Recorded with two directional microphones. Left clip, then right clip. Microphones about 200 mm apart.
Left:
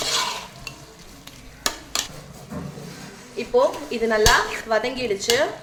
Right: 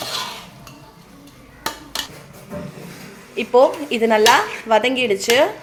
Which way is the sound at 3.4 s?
35° right (ahead or behind).